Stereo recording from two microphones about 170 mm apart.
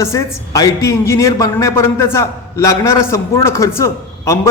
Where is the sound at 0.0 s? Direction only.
20° left (ahead or behind).